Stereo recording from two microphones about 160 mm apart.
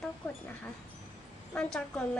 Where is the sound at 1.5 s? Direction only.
5° left (ahead or behind).